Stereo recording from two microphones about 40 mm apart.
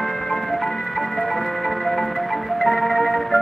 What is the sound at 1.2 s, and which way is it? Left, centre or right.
Music, centre.